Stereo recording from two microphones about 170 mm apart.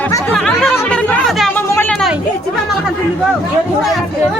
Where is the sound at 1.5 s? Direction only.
10° left (ahead or behind).